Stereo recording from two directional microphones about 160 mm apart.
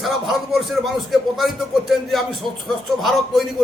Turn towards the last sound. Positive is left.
turn(degrees=0)  # may be behind; listen again after turning